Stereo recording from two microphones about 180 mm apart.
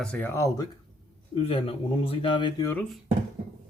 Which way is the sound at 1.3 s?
30° left (ahead or behind).